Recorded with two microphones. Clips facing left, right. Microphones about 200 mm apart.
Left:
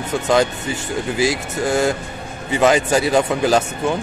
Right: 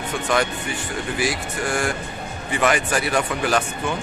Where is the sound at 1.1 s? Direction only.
25° left (ahead or behind).